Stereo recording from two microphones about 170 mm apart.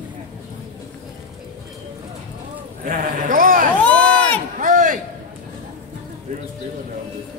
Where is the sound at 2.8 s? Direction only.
55° right (ahead or behind).